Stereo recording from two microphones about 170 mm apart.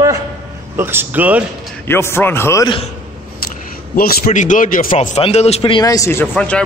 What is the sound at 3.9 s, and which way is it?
Speech, 60° left (ahead or behind).